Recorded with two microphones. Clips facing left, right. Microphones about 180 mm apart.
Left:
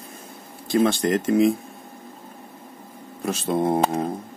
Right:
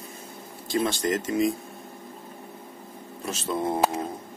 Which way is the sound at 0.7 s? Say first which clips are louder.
Left 5 dB; 60° left (ahead or behind).